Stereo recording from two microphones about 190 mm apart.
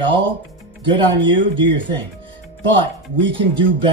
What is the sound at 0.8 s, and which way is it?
Speech, 25° right (ahead or behind).